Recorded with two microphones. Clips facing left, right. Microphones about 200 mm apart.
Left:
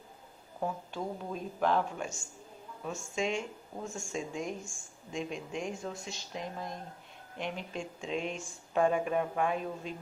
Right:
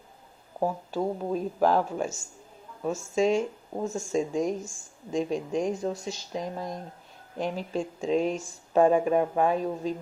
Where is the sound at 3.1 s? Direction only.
40° right (ahead or behind).